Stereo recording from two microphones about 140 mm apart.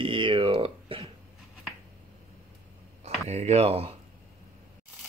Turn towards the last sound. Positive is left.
turn(degrees=-45)  # may be behind; listen again after turning